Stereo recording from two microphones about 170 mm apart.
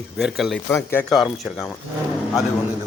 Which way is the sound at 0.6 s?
15° left (ahead or behind).